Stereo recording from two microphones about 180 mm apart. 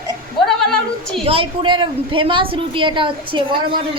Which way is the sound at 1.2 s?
30° right (ahead or behind).